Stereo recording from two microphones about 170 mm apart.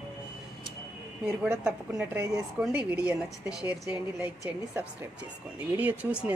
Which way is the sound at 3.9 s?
10° right (ahead or behind).